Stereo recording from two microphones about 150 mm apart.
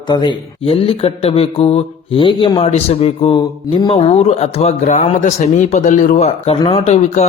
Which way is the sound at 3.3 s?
30° left (ahead or behind).